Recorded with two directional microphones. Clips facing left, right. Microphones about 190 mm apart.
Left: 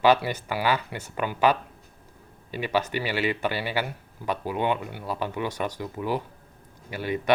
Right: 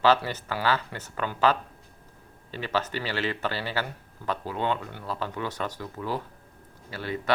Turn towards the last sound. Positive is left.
turn(degrees=15)  # may be behind; listen again after turning